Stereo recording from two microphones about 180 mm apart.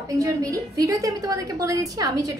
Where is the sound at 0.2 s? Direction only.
20° right (ahead or behind).